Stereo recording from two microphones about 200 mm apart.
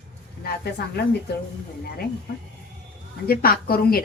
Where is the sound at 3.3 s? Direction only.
50° left (ahead or behind).